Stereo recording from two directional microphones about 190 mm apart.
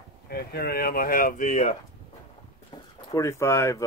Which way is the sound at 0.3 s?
55° left (ahead or behind).